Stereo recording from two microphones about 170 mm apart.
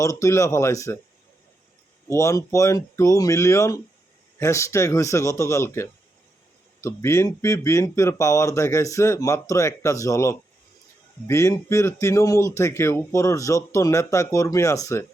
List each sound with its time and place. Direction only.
0.0 s speech: 20° left (ahead or behind)
2.0 s a man's voice: 20° left (ahead or behind)